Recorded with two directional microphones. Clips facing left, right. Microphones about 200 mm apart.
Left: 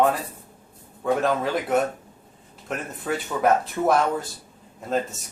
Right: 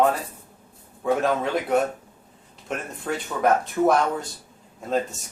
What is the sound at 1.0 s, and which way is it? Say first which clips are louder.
Speech: even; centre (ahead or behind).